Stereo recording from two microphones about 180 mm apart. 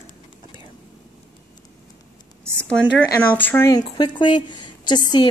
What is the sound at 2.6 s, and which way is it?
A woman's voice, 5° left (ahead or behind).